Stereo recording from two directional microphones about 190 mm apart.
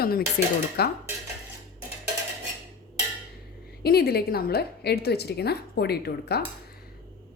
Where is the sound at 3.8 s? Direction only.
55° left (ahead or behind).